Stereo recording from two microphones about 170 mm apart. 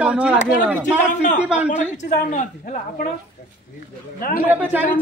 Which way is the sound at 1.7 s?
45° left (ahead or behind).